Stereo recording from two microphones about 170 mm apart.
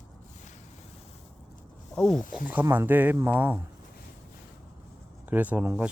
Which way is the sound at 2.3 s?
10° right (ahead or behind).